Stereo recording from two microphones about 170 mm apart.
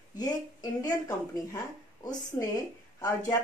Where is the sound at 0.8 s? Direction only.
20° left (ahead or behind).